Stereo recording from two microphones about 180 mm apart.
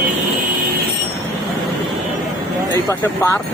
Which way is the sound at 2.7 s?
15° left (ahead or behind).